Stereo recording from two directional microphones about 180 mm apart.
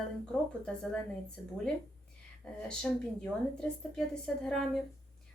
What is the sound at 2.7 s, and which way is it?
A woman's voice, 5° left (ahead or behind).